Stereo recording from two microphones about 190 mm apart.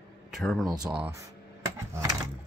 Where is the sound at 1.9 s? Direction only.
20° right (ahead or behind).